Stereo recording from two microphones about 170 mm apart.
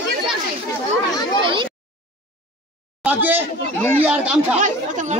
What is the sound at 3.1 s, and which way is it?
A man's voice, 10° right (ahead or behind).